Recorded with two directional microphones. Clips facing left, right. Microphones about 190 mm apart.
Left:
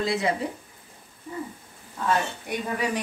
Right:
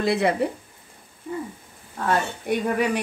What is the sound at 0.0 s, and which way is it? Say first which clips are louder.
Speech: right 4 dB; 60° right (ahead or behind).